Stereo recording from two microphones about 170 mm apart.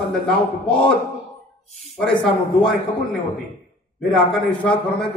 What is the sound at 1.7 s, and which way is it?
Speech, 40° left (ahead or behind).